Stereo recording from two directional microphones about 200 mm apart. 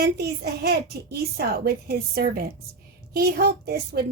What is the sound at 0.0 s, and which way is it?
A woman's voice, 55° right (ahead or behind).